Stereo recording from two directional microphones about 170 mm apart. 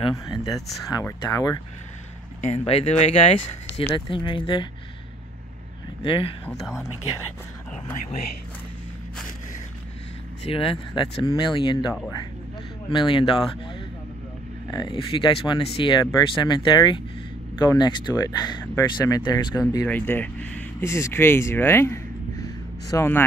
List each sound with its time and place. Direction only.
0.1 s speech: 20° left (ahead or behind)
2.4 s speech: 35° left (ahead or behind)
6.0 s speech: 30° left (ahead or behind)
6.5 s speech: centre (ahead or behind)
10.4 s speech: 30° left (ahead or behind)
12.9 s speech: 30° left (ahead or behind)
14.7 s speech: 25° left (ahead or behind)
19.9 s speech: 10° left (ahead or behind)